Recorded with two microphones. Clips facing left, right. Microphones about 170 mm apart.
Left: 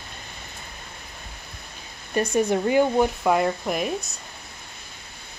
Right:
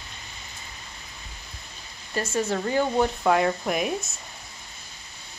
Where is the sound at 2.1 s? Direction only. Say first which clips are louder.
Left 5 dB; 15° left (ahead or behind).